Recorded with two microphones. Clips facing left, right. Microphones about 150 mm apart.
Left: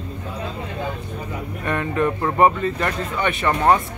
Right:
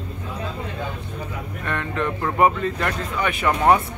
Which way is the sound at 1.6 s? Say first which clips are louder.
Left 4 dB; 10° left (ahead or behind).